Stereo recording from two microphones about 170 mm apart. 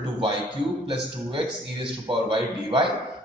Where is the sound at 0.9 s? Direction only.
30° right (ahead or behind).